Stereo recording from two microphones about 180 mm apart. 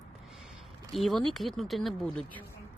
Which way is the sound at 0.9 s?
Centre (ahead or behind).